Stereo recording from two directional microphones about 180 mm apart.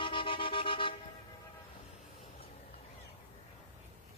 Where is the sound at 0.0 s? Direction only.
30° left (ahead or behind).